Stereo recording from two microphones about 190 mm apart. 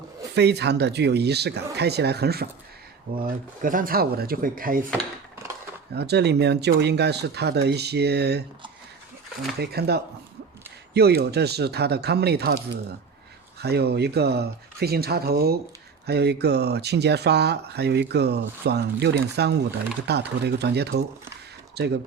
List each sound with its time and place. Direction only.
0.3 s speech: 60° right (ahead or behind)
5.9 s speech: 60° right (ahead or behind)
9.6 s speech: 55° right (ahead or behind)
13.6 s speech: 60° right (ahead or behind)